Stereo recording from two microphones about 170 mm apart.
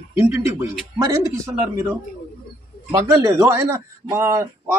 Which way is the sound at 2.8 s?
20° right (ahead or behind).